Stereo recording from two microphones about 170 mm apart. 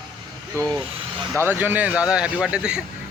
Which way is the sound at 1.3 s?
10° right (ahead or behind).